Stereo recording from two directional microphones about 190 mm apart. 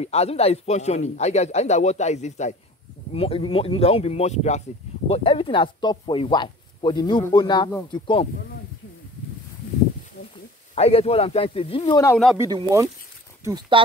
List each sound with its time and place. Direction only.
0.0 s speech: 35° left (ahead or behind)
10.7 s speech: 30° left (ahead or behind)
12.4 s speech: 20° right (ahead or behind)